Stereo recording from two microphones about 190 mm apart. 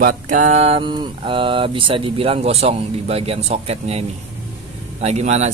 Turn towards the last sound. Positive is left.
turn(degrees=-35)  # may be behind; listen again after turning